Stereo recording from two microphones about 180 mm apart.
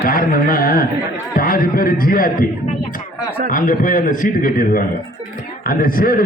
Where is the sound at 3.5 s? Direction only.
50° left (ahead or behind).